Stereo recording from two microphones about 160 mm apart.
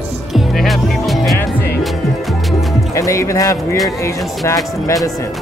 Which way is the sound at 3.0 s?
20° left (ahead or behind).